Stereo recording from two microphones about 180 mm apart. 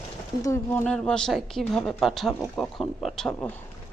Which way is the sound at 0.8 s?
5° left (ahead or behind).